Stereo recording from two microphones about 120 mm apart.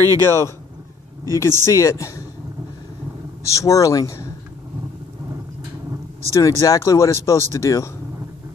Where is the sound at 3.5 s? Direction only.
30° left (ahead or behind).